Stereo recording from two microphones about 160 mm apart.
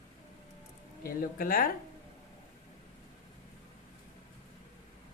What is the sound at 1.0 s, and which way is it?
Speech, 65° left (ahead or behind).